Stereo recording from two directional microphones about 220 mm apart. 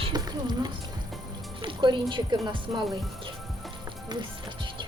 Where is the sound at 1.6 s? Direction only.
20° right (ahead or behind).